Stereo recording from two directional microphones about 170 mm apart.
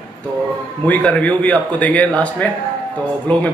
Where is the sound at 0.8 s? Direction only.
10° left (ahead or behind).